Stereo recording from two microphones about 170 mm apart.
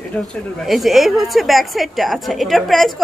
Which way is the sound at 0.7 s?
Centre (ahead or behind).